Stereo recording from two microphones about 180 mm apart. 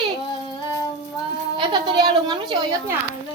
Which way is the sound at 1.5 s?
25° right (ahead or behind).